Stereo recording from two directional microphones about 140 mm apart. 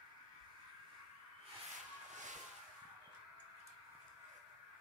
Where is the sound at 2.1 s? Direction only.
60° right (ahead or behind).